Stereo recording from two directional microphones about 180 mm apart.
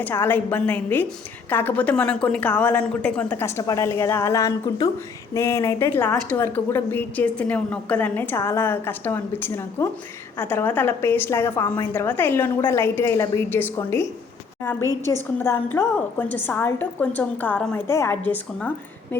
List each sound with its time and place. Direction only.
0.0 s a woman's voice: 10° left (ahead or behind)
14.8 s a woman's voice: 20° right (ahead or behind)
15.4 s a woman's voice: 10° left (ahead or behind)